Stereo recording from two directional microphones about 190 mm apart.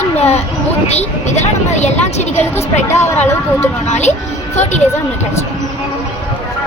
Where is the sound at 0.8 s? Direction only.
35° left (ahead or behind).